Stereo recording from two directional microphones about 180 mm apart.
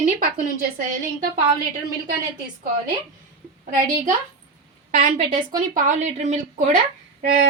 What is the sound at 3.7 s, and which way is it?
A woman's voice, 50° right (ahead or behind).